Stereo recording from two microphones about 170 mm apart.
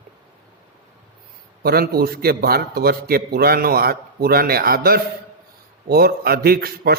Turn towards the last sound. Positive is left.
turn(degrees=-65)  # may be behind; listen again after turning